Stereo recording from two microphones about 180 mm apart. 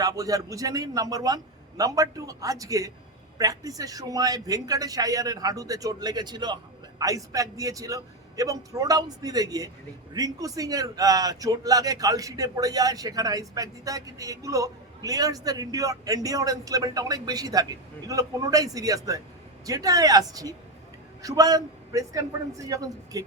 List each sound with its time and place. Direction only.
0.0 s a man's voice: 20° right (ahead or behind)